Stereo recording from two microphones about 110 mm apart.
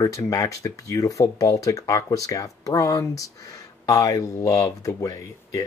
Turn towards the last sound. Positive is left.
turn(degrees=30)  # may be behind; listen again after turning